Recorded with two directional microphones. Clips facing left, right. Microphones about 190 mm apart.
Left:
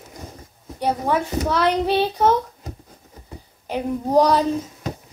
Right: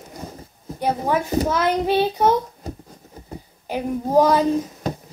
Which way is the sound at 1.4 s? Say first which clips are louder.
Even; 10° right (ahead or behind).